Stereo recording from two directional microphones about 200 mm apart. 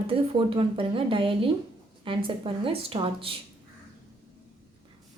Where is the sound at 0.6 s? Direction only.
25° right (ahead or behind).